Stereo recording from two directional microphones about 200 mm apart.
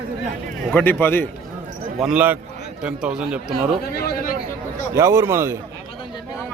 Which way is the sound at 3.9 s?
50° left (ahead or behind).